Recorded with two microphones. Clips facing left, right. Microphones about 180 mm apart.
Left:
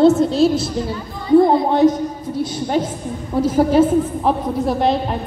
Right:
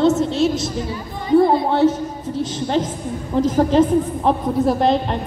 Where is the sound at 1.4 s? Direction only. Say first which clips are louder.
Left 2 dB; 20° left (ahead or behind).